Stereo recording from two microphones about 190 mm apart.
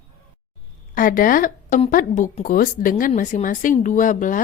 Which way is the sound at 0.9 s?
45° left (ahead or behind).